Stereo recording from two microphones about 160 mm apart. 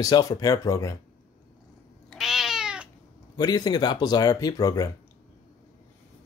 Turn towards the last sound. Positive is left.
turn(degrees=20)  # may be behind; listen again after turning